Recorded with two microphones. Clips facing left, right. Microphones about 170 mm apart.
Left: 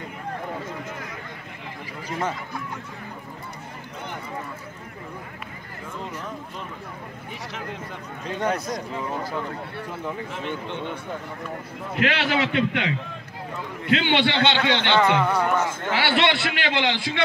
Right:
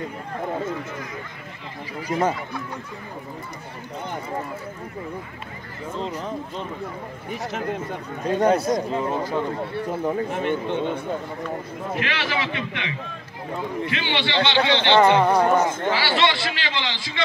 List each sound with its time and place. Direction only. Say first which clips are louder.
2.0 s speech: right 6 dB; 40° right (ahead or behind)
5.9 s speech: right 5 dB; 30° right (ahead or behind)
7.4 s speech: right 8 dB; 50° right (ahead or behind)
8.7 s speech: right 6 dB; 20° right (ahead or behind)
9.8 s speech: right 8 dB; 45° right (ahead or behind)
12.1 s a man's voice: left 3 dB; 60° left (ahead or behind)
15.0 s speech: right 5 dB; 40° right (ahead or behind)
15.9 s a man's voice: even; 60° left (ahead or behind)